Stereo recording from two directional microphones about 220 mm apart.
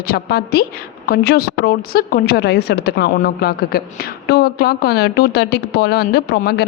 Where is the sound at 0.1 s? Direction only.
45° left (ahead or behind).